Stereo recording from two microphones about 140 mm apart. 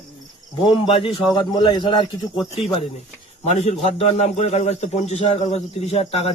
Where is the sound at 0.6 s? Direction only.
35° left (ahead or behind).